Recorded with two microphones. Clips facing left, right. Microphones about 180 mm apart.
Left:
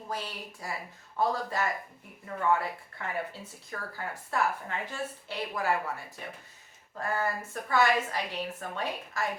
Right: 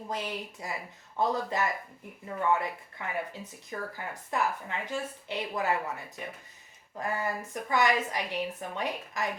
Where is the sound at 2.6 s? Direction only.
15° right (ahead or behind).